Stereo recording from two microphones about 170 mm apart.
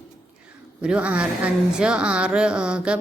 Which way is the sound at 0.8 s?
5° right (ahead or behind).